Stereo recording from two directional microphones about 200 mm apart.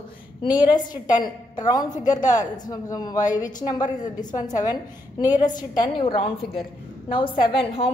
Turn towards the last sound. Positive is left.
turn(degrees=30)  # may be behind; listen again after turning